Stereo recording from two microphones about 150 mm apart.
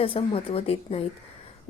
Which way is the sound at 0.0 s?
40° left (ahead or behind).